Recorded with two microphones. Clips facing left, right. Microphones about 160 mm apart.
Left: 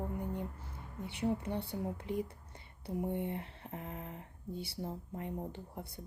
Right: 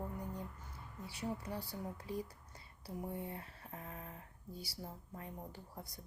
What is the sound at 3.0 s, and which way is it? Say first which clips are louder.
Speech: left 7 dB; 25° left (ahead or behind).